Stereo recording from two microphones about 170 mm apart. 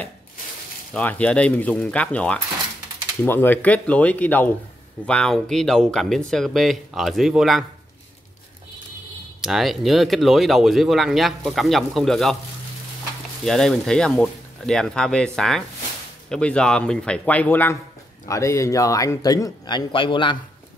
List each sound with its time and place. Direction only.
0.9 s speech: 10° left (ahead or behind)
9.4 s speech: centre (ahead or behind)
13.4 s speech: 5° left (ahead or behind); by 20.3 s 30° left (ahead or behind)